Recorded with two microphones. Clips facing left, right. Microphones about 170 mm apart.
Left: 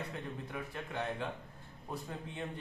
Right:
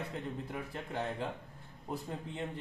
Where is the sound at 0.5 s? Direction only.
30° right (ahead or behind).